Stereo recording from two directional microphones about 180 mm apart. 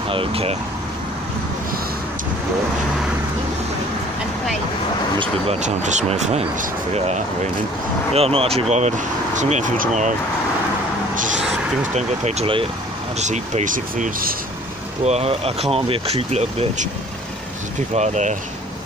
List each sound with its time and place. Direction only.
0.1 s speech: 30° right (ahead or behind)
5.2 s speech: 40° right (ahead or behind)
11.9 s speech: 40° right (ahead or behind)
15.0 s speech: 35° right (ahead or behind)
17.9 s speech: 40° right (ahead or behind)